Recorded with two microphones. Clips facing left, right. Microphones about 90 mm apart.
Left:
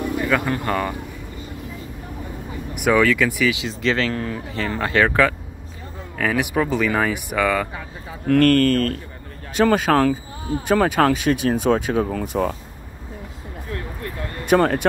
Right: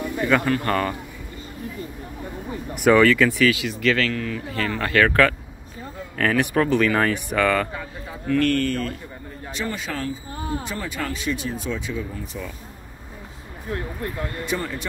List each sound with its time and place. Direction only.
0.3 s speech: centre (ahead or behind)
2.8 s speech: 5° left (ahead or behind)
3.5 s speech: 25° left (ahead or behind); by 7.6 s 10° left (ahead or behind)
8.3 s a man's voice: 50° left (ahead or behind)
13.7 s speech: 25° right (ahead or behind)
14.4 s a man's voice: 60° left (ahead or behind)